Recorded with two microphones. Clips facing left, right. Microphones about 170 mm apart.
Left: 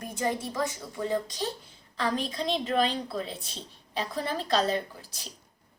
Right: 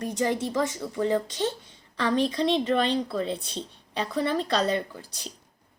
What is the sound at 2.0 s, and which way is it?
A woman's voice, centre (ahead or behind).